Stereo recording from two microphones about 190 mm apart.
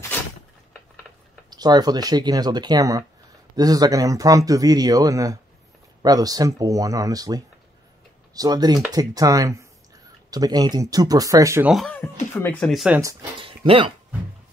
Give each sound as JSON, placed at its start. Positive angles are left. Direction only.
{"t": 1.5, "sound": "speech", "side_deg": -20}
{"t": 11.7, "sound": "speech", "side_deg": 5}
{"t": 13.4, "sound": "speech", "side_deg": -30}